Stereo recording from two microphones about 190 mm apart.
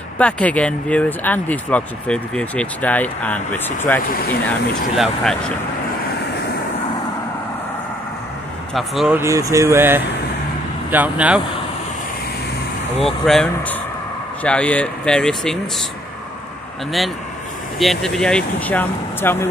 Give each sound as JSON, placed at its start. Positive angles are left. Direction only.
{"t": 0.2, "sound": "speech", "side_deg": 5}
{"t": 8.7, "sound": "speech", "side_deg": 0}
{"t": 9.2, "sound": "speech", "side_deg": -15}
{"t": 13.2, "sound": "speech", "side_deg": 5}
{"t": 17.7, "sound": "speech", "side_deg": 0}